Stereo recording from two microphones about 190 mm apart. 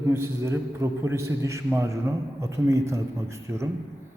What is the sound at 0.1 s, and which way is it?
A man's voice, 15° right (ahead or behind).